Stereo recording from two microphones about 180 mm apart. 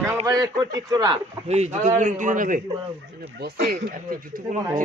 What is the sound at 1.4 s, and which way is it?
A man's voice, 40° right (ahead or behind).